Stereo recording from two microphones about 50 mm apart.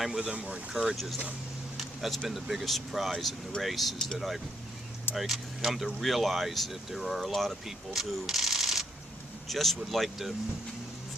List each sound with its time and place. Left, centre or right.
0.0 s speech: centre
0.7 s speech: centre
0.9 s speech: centre
1.8 s a sound: centre
2.2 s speech: centre
5.1 s speech: centre
7.9 s a sound: centre
9.5 s speech: centre